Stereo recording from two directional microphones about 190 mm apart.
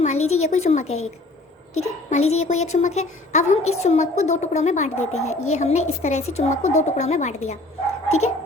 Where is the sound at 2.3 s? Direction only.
35° left (ahead or behind).